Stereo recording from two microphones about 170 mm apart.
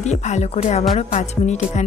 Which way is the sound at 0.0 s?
45° left (ahead or behind).